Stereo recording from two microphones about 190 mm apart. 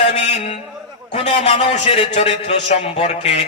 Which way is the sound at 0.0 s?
35° left (ahead or behind).